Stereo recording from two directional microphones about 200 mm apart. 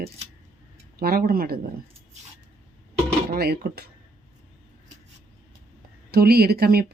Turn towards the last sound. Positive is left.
turn(degrees=-50)  # may be behind; listen again after turning